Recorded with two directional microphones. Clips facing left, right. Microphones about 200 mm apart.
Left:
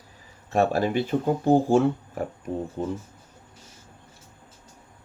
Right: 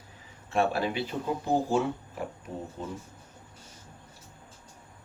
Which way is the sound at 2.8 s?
65° left (ahead or behind).